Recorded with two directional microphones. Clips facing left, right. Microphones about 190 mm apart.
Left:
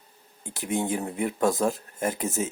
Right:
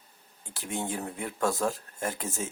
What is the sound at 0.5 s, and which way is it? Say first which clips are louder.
Speech: left 6 dB; 20° left (ahead or behind).